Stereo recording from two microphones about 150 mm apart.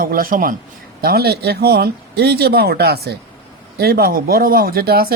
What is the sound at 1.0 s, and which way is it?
Speech, 90° right.